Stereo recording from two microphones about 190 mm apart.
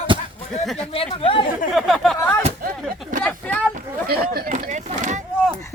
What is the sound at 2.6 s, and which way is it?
Speech, 50° right (ahead or behind).